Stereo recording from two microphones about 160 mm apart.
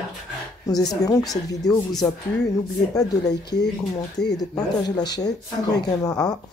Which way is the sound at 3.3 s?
90° left.